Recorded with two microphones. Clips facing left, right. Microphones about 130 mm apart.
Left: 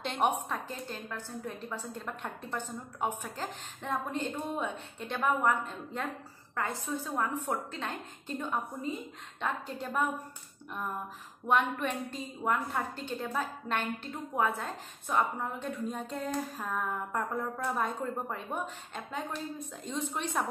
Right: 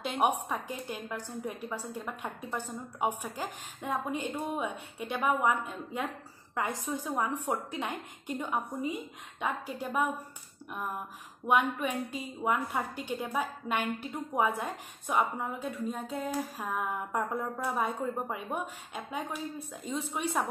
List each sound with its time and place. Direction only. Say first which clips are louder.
0.0 s a woman's voice: right 1 dB; 10° right (ahead or behind)
11.4 s a woman's voice: right 1 dB; 10° right (ahead or behind)
15.4 s a woman's voice: right 1 dB; centre (ahead or behind)